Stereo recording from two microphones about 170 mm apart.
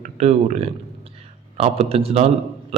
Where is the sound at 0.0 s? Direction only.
40° right (ahead or behind).